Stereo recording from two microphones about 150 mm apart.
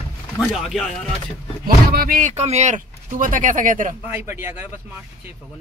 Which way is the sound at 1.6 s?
75° right (ahead or behind).